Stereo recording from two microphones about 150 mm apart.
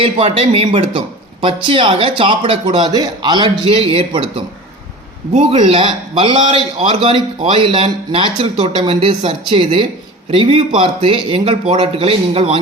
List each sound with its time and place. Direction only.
0.0 s a man's voice: 40° right (ahead or behind)
3.6 s a man's voice: 40° right (ahead or behind)
5.3 s a man's voice: 50° right (ahead or behind)
5.5 s a man's voice: 35° right (ahead or behind)